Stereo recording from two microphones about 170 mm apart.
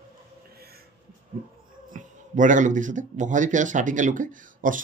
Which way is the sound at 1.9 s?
50° right (ahead or behind).